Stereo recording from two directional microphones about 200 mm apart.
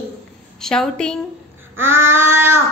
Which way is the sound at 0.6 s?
5° left (ahead or behind).